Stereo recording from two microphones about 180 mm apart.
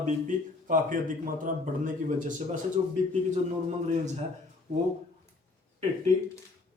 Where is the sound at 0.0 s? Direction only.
45° right (ahead or behind).